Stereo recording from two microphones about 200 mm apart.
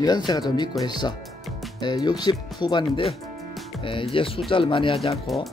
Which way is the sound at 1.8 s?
20° left (ahead or behind).